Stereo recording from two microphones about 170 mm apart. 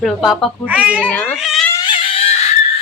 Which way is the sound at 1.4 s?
Centre (ahead or behind).